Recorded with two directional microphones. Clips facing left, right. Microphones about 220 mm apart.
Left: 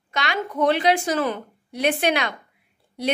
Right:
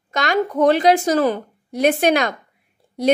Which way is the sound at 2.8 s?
45° right (ahead or behind).